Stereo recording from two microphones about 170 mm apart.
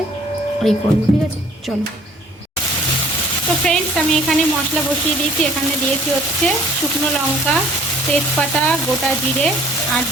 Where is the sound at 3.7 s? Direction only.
5° left (ahead or behind).